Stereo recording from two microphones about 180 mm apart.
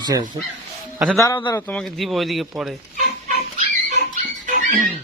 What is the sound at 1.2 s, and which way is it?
Speech, 20° left (ahead or behind).